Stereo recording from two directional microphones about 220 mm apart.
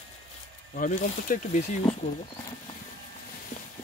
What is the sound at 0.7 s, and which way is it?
Speech, 35° left (ahead or behind).